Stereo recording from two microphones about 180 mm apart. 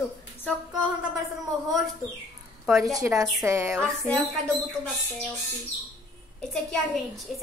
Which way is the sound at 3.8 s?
5° left (ahead or behind).